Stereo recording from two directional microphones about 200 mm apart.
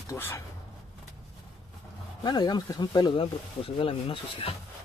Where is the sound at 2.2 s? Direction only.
20° left (ahead or behind).